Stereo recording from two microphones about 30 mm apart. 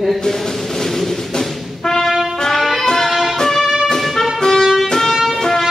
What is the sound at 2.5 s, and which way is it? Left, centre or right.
Music, centre.